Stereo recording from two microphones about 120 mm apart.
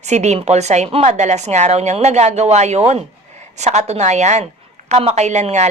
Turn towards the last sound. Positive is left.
turn(degrees=-70)  # may be behind; listen again after turning